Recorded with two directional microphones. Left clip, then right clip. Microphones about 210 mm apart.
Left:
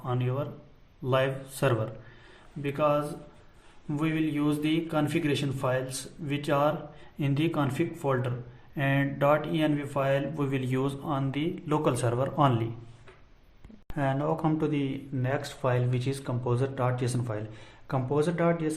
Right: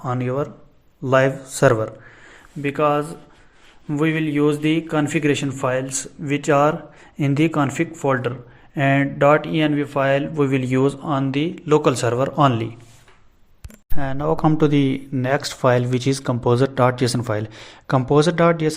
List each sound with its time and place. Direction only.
0.0 s speech: 40° right (ahead or behind); by 12.6 s 20° right (ahead or behind)
13.9 s speech: 40° right (ahead or behind)